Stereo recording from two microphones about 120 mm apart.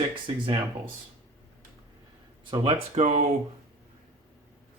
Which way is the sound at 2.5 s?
45° right (ahead or behind).